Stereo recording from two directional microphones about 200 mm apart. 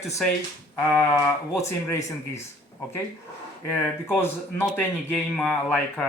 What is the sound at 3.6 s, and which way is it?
Speech, 10° left (ahead or behind).